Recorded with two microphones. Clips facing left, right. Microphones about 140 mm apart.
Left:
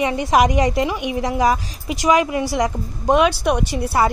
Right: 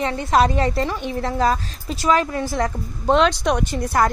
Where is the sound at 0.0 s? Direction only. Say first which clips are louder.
Left 2 dB; 15° left (ahead or behind).